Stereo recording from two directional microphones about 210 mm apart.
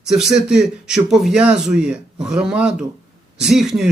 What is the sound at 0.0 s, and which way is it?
Speech, centre (ahead or behind).